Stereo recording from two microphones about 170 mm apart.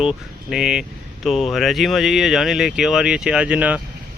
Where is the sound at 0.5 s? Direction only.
5° right (ahead or behind).